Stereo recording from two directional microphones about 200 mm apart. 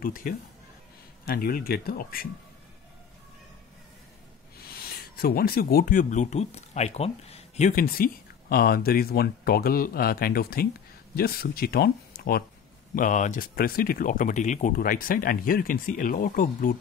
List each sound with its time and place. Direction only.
0.0 s speech: 45° left (ahead or behind)
5.1 s speech: 50° left (ahead or behind)
12.9 s speech: 40° left (ahead or behind)